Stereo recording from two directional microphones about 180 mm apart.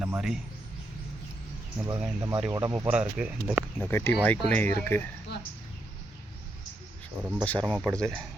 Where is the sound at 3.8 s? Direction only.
10° left (ahead or behind).